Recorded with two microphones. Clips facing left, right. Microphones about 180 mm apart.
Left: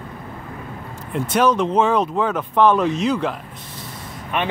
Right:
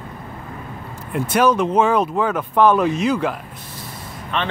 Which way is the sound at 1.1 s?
5° right (ahead or behind).